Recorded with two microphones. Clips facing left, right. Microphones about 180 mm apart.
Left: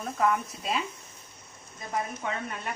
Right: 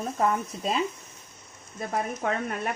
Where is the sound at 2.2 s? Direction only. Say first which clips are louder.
Right 5 dB; 55° right (ahead or behind).